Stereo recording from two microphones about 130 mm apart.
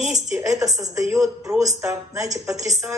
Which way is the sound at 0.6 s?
20° right (ahead or behind).